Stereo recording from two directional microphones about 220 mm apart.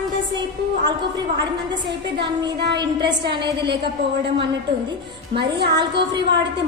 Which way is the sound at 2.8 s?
20° right (ahead or behind).